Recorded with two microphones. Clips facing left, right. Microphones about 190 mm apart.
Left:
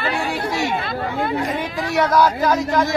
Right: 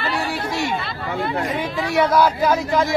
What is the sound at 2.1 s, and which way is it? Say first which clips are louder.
Speech: even; 10° right (ahead or behind).